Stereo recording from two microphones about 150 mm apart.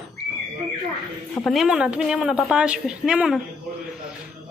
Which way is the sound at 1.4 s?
Centre (ahead or behind).